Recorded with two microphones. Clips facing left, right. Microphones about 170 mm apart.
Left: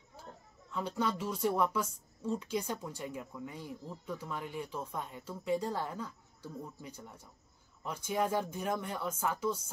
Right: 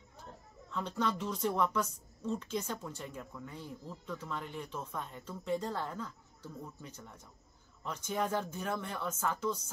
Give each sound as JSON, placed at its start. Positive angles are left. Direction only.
{"t": 0.7, "sound": "speech", "side_deg": 10}